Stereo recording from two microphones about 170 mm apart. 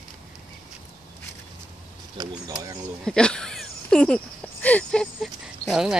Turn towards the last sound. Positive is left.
turn(degrees=0)  # may be behind; listen again after turning